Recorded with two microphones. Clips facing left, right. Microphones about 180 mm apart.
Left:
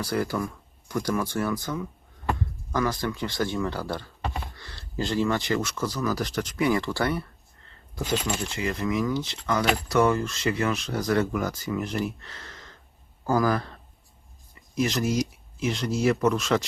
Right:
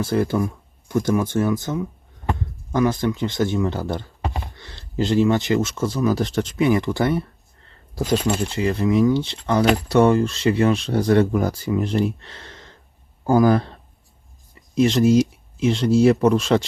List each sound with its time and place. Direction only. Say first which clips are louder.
0.0 s speech: right 7 dB; 25° right (ahead or behind)
7.9 s speech: right 7 dB; 35° right (ahead or behind)
14.8 s speech: right 9 dB; 30° right (ahead or behind)